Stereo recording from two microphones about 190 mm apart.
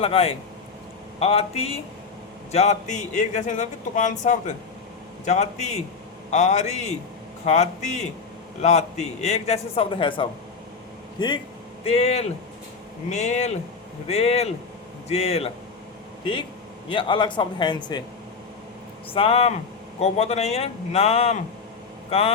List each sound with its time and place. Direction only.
0.0 s a man's voice: 30° left (ahead or behind)
16.9 s a man's voice: 25° left (ahead or behind)
19.1 s a man's voice: 30° left (ahead or behind)